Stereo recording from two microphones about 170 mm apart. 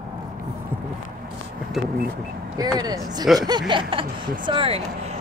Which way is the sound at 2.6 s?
25° right (ahead or behind).